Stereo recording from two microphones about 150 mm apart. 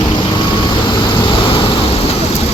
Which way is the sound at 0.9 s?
35° left (ahead or behind).